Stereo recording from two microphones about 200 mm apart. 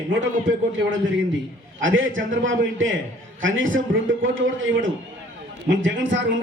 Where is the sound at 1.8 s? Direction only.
75° right (ahead or behind).